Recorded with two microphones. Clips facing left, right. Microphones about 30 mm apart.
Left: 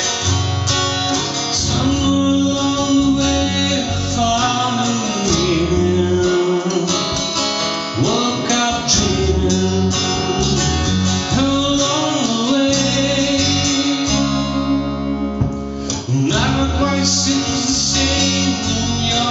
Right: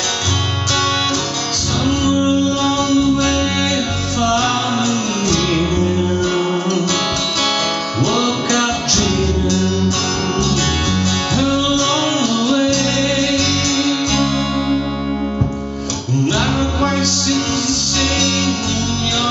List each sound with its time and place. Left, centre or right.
2.8 s music: centre
8.0 s music: centre
16.3 s music: centre